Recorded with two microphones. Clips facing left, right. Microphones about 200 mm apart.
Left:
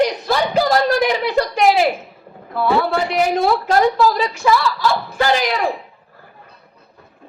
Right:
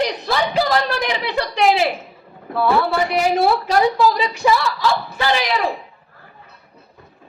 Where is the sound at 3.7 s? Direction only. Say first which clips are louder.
Left 1 dB; 50° left (ahead or behind).